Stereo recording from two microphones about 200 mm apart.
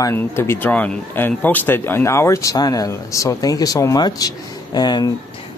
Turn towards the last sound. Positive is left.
turn(degrees=20)  # may be behind; listen again after turning